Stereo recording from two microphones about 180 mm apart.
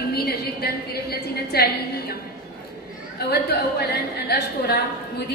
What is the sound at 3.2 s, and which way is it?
A woman's voice, 60° left (ahead or behind).